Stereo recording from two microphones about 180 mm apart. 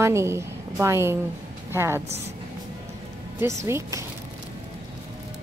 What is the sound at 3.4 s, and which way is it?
Speech, 15° right (ahead or behind).